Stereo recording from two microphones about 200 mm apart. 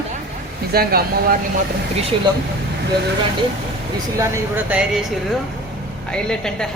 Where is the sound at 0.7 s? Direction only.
50° right (ahead or behind).